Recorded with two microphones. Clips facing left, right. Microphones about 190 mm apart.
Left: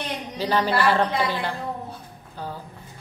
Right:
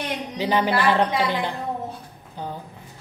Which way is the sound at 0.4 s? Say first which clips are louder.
Right 1 dB; 15° right (ahead or behind).